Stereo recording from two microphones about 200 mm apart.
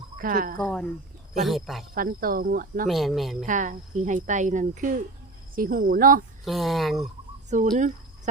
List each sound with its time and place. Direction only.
0.2 s speech: 45° right (ahead or behind)
0.6 s speech: 5° left (ahead or behind)
2.0 s speech: 45° right (ahead or behind)
2.8 s speech: centre (ahead or behind)
3.4 s speech: 40° right (ahead or behind)
6.4 s speech: centre (ahead or behind)
7.5 s speech: 40° right (ahead or behind)